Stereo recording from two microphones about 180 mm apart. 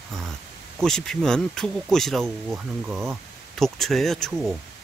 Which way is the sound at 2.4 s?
10° right (ahead or behind).